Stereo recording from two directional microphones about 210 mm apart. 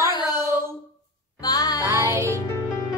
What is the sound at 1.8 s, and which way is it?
Speech, 15° right (ahead or behind).